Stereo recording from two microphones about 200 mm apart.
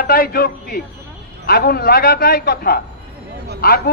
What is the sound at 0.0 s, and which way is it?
A man's voice, 45° left (ahead or behind).